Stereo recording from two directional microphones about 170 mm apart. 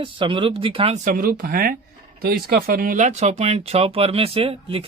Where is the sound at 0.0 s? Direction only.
30° right (ahead or behind).